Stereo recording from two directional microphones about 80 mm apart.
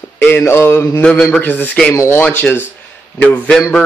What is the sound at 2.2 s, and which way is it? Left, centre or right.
Speech, left.